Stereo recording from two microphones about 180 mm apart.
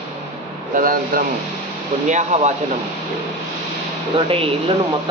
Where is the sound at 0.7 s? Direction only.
50° right (ahead or behind).